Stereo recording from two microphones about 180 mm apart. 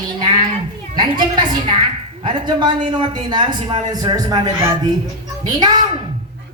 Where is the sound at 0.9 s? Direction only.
25° right (ahead or behind).